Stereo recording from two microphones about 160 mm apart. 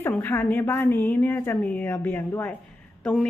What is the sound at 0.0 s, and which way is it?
A woman's voice, 10° left (ahead or behind).